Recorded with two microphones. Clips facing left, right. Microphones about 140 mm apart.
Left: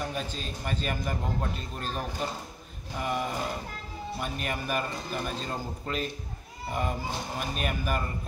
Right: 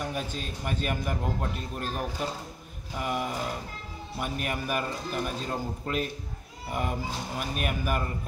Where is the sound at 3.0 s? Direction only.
5° right (ahead or behind).